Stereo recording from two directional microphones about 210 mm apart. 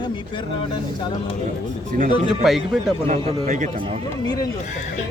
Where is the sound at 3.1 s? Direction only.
35° right (ahead or behind).